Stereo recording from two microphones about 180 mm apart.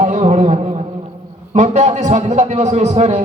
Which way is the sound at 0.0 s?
40° right (ahead or behind).